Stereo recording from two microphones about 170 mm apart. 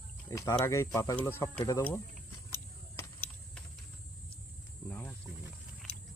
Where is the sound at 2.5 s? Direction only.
15° left (ahead or behind).